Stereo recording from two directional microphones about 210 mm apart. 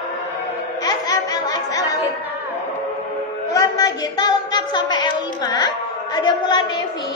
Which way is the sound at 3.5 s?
15° left (ahead or behind).